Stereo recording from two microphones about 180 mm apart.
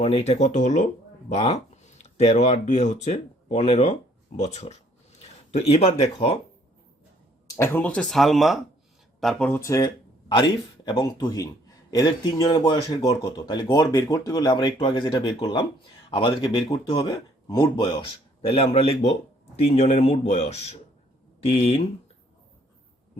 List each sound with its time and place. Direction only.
0.0 s speech: 35° left (ahead or behind)
7.5 s speech: 10° left (ahead or behind); by 21.8 s 35° left (ahead or behind)